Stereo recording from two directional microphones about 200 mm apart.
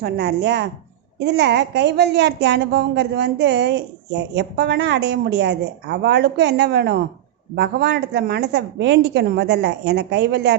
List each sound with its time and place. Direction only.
0.0 s a woman's voice: 55° right (ahead or behind)